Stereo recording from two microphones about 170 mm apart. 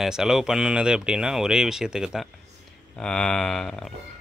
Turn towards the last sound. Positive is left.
turn(degrees=0)  # may be behind; listen again after turning